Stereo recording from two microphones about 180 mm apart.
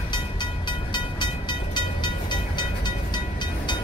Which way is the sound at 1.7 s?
25° left (ahead or behind).